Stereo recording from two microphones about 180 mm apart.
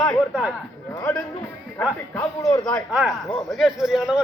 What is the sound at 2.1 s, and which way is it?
Speech, 15° left (ahead or behind).